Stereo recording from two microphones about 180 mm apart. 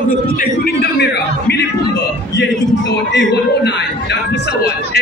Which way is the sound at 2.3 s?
75° left (ahead or behind).